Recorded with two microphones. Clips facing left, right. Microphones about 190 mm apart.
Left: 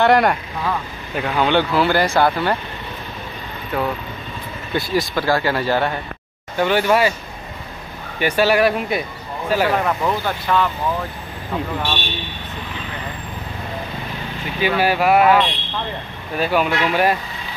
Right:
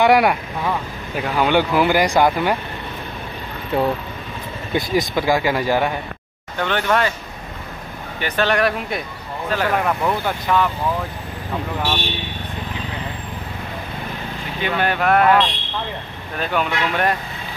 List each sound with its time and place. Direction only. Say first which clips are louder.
0.0 s speech: even; 10° right (ahead or behind)
3.7 s speech: right 3 dB; 25° right (ahead or behind)
6.6 s speech: left 3 dB; 10° left (ahead or behind)
8.2 s speech: left 3 dB; 10° left (ahead or behind)
9.8 s speech: even; centre (ahead or behind)
10.2 s speech: even; 10° right (ahead or behind)
14.6 s speech: left 3 dB; 5° left (ahead or behind)